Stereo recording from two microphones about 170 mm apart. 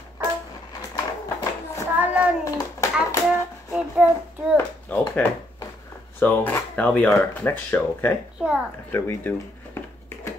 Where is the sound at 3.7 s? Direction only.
10° right (ahead or behind).